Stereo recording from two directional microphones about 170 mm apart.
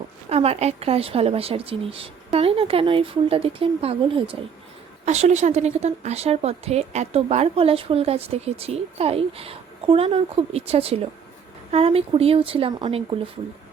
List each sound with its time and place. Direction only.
0.3 s speech: 35° right (ahead or behind)